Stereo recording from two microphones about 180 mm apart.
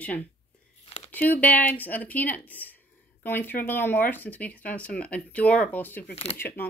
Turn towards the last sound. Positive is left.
turn(degrees=10)  # may be behind; listen again after turning